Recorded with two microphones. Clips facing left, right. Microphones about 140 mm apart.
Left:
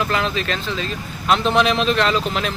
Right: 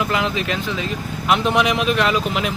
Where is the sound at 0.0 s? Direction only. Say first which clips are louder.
Even; 15° right (ahead or behind).